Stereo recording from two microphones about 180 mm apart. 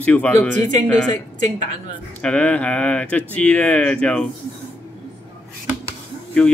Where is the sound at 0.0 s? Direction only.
10° left (ahead or behind).